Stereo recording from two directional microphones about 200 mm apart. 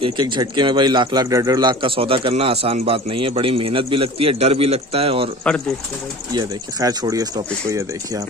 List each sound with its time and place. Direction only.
0.0 s a man's voice: 20° right (ahead or behind)
6.3 s speech: 20° right (ahead or behind)